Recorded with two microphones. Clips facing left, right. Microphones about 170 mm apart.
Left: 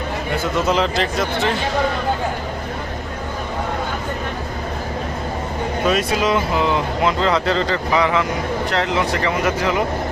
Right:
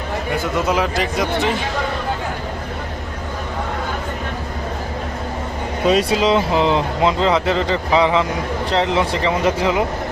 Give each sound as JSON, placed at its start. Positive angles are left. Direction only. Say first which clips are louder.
{"t": 0.5, "sound": "speech", "louder": "left 1 dB", "side_deg": -10}
{"t": 5.9, "sound": "speech", "louder": "right 4 dB", "side_deg": -30}